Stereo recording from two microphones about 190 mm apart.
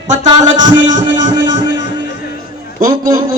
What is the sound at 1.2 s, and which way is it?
Music, 65° left (ahead or behind).